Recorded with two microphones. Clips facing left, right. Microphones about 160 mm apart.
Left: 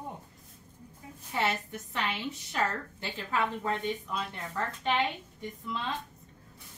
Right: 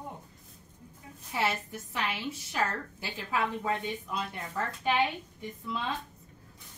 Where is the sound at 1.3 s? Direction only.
Centre (ahead or behind).